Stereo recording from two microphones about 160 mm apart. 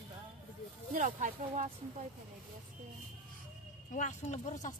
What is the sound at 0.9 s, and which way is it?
Speech, 55° right (ahead or behind).